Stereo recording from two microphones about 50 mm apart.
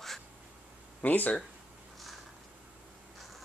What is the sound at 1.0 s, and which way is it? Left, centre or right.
Speech, left.